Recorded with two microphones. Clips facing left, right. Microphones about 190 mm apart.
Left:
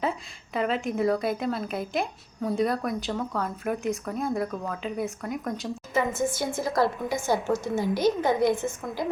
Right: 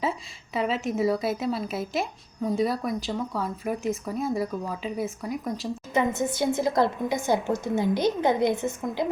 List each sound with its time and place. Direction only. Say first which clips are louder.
0.0 s a woman's voice: even; centre (ahead or behind)
5.9 s a woman's voice: right 1 dB; 20° right (ahead or behind)